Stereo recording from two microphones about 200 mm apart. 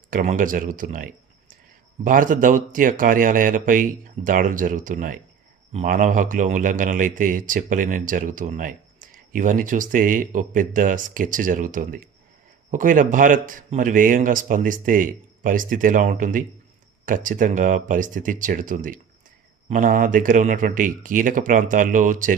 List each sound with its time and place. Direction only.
0.1 s a man's voice: 45° right (ahead or behind)